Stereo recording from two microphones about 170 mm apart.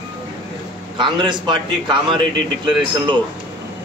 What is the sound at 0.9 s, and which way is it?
Speech, 25° right (ahead or behind).